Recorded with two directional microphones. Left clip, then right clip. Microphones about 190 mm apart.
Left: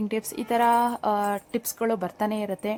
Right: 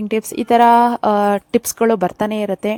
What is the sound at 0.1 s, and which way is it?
A woman's voice, 35° right (ahead or behind).